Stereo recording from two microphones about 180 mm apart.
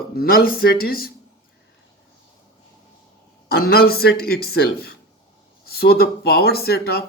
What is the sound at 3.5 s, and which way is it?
Speech, 55° left (ahead or behind).